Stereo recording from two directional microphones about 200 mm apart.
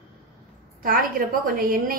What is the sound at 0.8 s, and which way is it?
A woman's voice, 45° right (ahead or behind).